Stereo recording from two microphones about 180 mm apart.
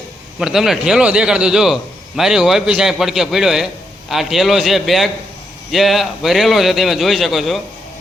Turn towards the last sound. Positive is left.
turn(degrees=0)  # may be behind; listen again after turning